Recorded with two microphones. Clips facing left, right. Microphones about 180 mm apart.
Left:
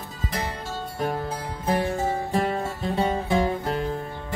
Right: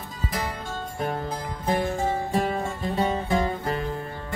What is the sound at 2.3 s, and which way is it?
Music, centre (ahead or behind).